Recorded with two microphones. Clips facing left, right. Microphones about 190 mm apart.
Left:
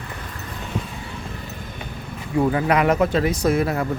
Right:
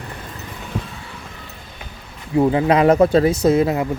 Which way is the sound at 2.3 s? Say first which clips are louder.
Right 4 dB; 20° right (ahead or behind).